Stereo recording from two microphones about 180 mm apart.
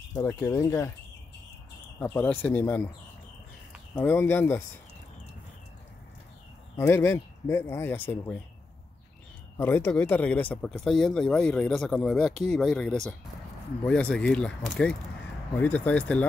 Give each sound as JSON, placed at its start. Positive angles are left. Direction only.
{"t": 0.2, "sound": "speech", "side_deg": 15}
{"t": 2.0, "sound": "speech", "side_deg": 10}
{"t": 3.9, "sound": "speech", "side_deg": 10}
{"t": 6.8, "sound": "speech", "side_deg": 15}
{"t": 9.6, "sound": "speech", "side_deg": 15}